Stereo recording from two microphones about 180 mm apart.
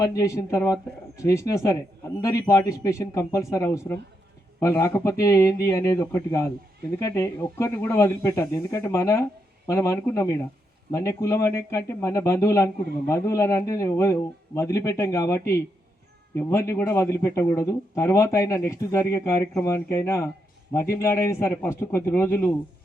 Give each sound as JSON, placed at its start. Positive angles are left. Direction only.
{"t": 0.0, "sound": "a man's voice", "side_deg": 20}